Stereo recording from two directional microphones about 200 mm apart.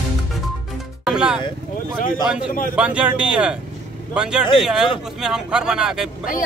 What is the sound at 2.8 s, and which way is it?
Speech, 5° right (ahead or behind).